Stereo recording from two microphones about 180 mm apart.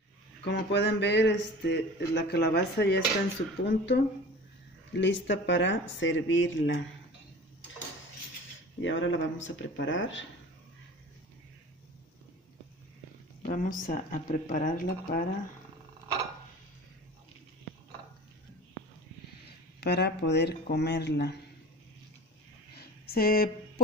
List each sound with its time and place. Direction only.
0.4 s speech: 70° left (ahead or behind); by 6.8 s 90° left
8.8 s speech: 90° left
13.5 s speech: 50° left (ahead or behind)
19.8 s speech: 65° left (ahead or behind)
22.8 s a sound: 55° left (ahead or behind)